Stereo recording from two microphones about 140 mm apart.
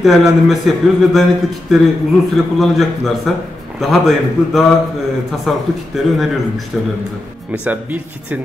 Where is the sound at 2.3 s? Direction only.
Centre (ahead or behind).